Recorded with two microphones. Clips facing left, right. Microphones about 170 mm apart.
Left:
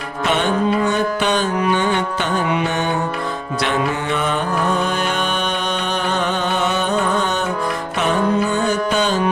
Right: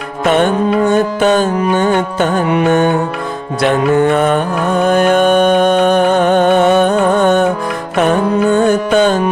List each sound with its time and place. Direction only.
0.9 s music: 45° right (ahead or behind)
8.4 s music: 55° right (ahead or behind)